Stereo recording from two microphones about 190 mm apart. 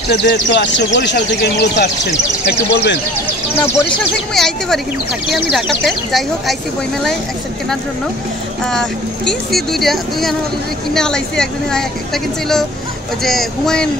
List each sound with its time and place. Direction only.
0.1 s speech: 60° left (ahead or behind)
4.0 s speech: centre (ahead or behind)
8.6 s speech: centre (ahead or behind)